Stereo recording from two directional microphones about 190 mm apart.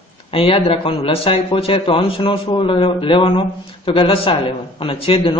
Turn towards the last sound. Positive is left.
turn(degrees=30)  # may be behind; listen again after turning